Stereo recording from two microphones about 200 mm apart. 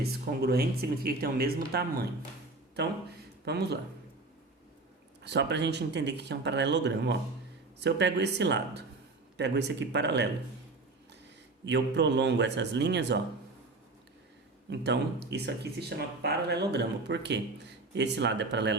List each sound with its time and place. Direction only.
0.0 s speech: 50° right (ahead or behind)
3.4 s speech: 55° right (ahead or behind)
5.2 s speech: 60° right (ahead or behind)
11.6 s speech: 60° right (ahead or behind)
14.7 s speech: 60° right (ahead or behind)